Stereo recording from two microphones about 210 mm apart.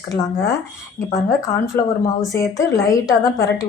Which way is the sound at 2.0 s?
15° left (ahead or behind).